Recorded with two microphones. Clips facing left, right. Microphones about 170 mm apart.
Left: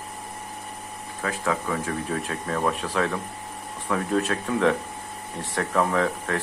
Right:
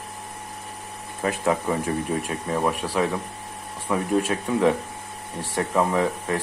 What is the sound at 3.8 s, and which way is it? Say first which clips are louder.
Speech: right 2 dB; 15° right (ahead or behind).